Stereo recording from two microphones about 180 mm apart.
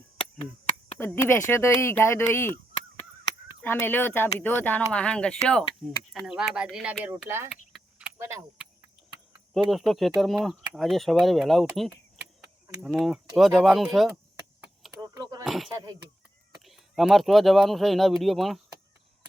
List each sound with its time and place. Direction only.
0.3 s a sound: 30° left (ahead or behind)
0.9 s speech: 15° left (ahead or behind)
3.6 s speech: 10° left (ahead or behind); by 7.4 s 15° right (ahead or behind)
7.5 s keys jangling: 5° right (ahead or behind)
8.2 s speech: 15° right (ahead or behind)
9.6 s speech: centre (ahead or behind)
15.0 s a sound: 20° right (ahead or behind)
15.4 s speech: centre (ahead or behind)